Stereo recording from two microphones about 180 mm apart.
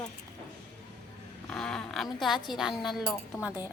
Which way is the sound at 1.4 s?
5° left (ahead or behind).